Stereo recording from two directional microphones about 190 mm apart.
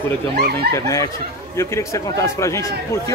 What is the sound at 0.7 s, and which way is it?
Speech, 15° left (ahead or behind).